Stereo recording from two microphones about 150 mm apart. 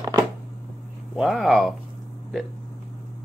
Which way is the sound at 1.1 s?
Centre (ahead or behind).